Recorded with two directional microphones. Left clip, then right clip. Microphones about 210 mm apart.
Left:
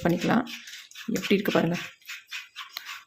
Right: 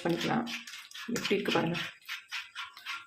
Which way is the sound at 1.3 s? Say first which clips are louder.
Left 6 dB; 40° left (ahead or behind).